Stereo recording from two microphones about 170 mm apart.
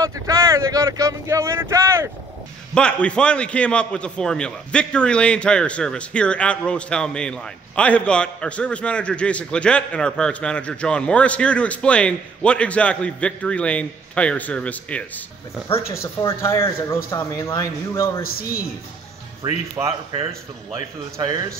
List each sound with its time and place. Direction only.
0.0 s speech: 20° right (ahead or behind)
2.7 s a man's voice: 5° left (ahead or behind)
16.2 s a man's voice: 15° left (ahead or behind)
19.8 s speech: 10° right (ahead or behind)
20.7 s speech: 25° right (ahead or behind)